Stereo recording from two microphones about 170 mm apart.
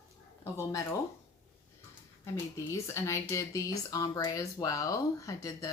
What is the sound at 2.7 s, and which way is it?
A woman's voice, 15° left (ahead or behind).